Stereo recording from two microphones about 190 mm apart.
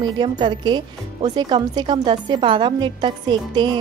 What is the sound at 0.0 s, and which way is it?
Speech, 25° right (ahead or behind).